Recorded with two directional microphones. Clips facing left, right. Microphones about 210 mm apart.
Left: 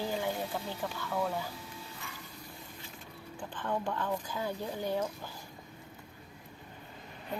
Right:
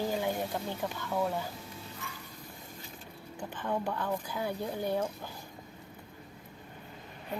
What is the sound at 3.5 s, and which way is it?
Speech, 10° right (ahead or behind).